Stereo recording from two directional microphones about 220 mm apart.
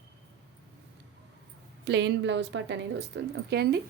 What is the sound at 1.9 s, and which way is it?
A woman's voice, 50° right (ahead or behind).